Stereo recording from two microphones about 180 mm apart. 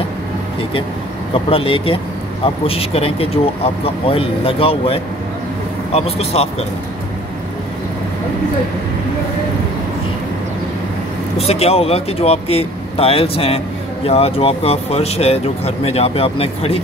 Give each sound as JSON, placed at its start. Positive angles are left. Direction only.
{"t": 1.3, "sound": "speech", "side_deg": 30}
{"t": 11.3, "sound": "speech", "side_deg": 35}